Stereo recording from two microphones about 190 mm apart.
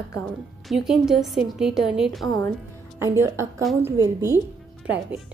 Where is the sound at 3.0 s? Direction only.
15° right (ahead or behind).